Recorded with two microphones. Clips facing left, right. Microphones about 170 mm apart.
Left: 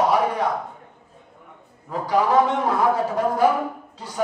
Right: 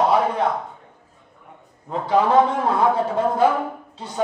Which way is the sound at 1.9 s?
25° right (ahead or behind).